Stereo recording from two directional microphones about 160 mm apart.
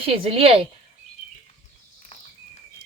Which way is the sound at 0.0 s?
35° right (ahead or behind).